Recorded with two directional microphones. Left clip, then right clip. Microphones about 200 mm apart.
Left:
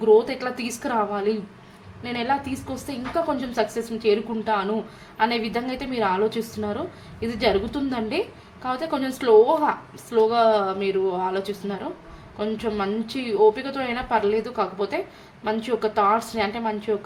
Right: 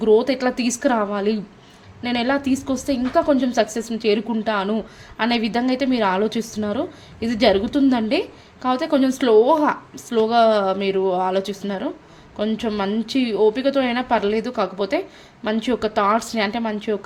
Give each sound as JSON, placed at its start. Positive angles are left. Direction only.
{"t": 0.0, "sound": "a woman's voice", "side_deg": -45}